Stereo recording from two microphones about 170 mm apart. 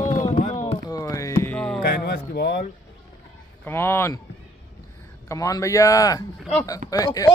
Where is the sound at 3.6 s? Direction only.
15° left (ahead or behind).